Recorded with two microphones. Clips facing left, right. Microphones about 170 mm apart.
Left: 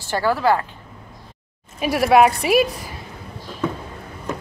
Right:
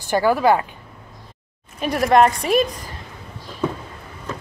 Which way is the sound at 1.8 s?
5° left (ahead or behind).